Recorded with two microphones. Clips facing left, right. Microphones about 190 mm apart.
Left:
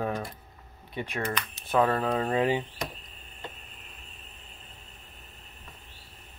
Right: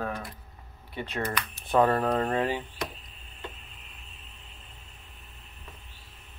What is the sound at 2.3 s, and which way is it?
Speech, 15° left (ahead or behind).